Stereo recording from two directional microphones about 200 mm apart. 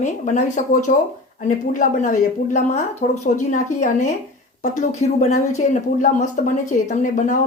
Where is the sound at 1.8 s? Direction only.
40° left (ahead or behind).